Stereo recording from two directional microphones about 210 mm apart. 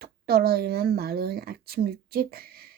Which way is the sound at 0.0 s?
45° right (ahead or behind).